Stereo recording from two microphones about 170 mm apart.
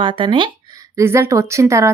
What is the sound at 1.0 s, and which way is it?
Speech, 15° right (ahead or behind).